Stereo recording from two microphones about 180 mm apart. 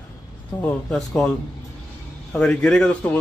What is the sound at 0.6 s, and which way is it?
Speech, 5° left (ahead or behind).